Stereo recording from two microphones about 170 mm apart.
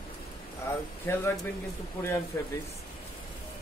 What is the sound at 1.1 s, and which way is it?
Speech, 15° left (ahead or behind).